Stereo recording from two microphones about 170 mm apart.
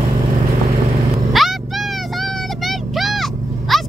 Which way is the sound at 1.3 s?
Centre (ahead or behind).